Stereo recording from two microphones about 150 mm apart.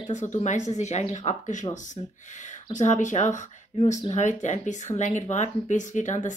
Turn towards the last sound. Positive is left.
turn(degrees=55)  # may be behind; listen again after turning